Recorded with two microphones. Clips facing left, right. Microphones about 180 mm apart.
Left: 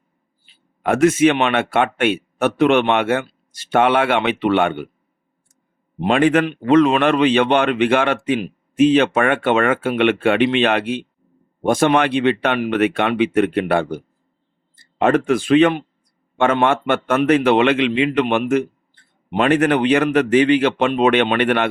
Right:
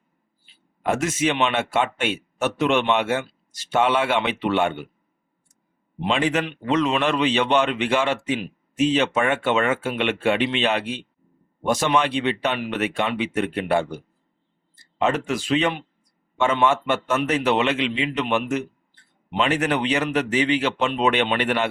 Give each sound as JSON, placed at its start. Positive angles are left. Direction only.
{"t": 0.8, "sound": "a man's voice", "side_deg": 60}
{"t": 6.0, "sound": "a man's voice", "side_deg": 55}